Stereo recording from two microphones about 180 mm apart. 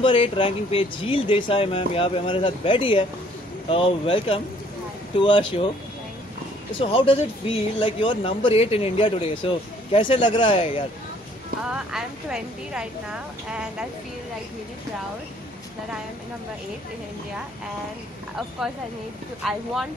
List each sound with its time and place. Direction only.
0.0 s speech: 30° left (ahead or behind)
6.8 s speech: 30° left (ahead or behind)
11.6 s a woman's voice: 5° right (ahead or behind)
19.4 s a woman's voice: centre (ahead or behind)